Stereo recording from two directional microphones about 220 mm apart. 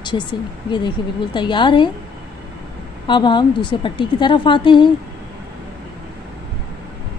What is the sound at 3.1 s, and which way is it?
A woman's voice, 20° left (ahead or behind).